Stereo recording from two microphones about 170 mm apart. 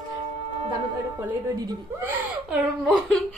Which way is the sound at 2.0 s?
10° right (ahead or behind).